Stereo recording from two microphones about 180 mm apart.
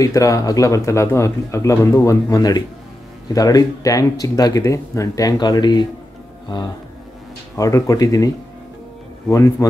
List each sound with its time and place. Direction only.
0.0 s speech: 20° left (ahead or behind)
7.5 s speech: 20° left (ahead or behind)
9.3 s speech: 20° left (ahead or behind)